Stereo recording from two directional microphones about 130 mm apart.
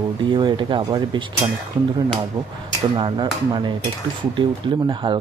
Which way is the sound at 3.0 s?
35° right (ahead or behind).